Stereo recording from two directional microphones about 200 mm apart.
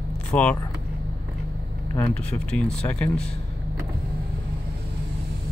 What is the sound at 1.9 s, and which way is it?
Speech, 15° left (ahead or behind).